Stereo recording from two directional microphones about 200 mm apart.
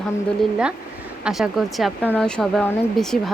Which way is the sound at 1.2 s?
Centre (ahead or behind).